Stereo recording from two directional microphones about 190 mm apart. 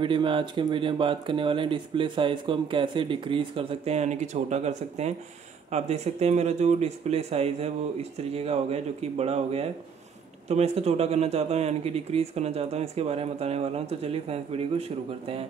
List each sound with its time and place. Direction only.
0.0 s speech: 25° right (ahead or behind)